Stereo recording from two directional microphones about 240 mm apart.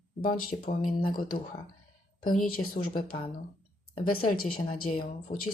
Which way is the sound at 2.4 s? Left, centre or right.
Left.